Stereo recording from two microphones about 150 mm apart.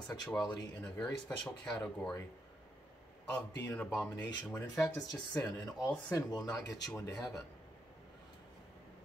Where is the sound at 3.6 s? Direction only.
15° left (ahead or behind).